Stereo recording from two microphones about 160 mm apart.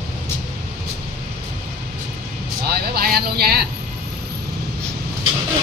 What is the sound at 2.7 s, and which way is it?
Speech, 75° right (ahead or behind).